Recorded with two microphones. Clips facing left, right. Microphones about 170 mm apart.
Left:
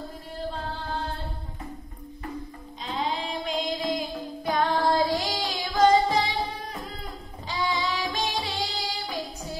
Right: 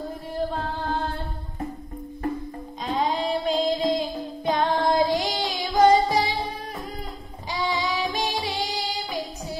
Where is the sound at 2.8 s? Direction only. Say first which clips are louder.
Right 5 dB; 50° right (ahead or behind); by 4.0 s 30° right (ahead or behind).